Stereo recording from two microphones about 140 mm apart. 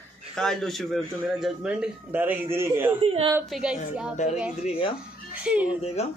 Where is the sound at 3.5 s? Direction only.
5° right (ahead or behind).